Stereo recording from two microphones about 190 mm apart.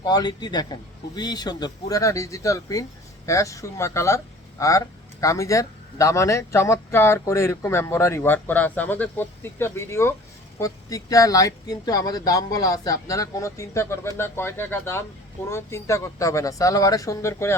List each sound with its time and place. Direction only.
0.0 s speech: 20° left (ahead or behind)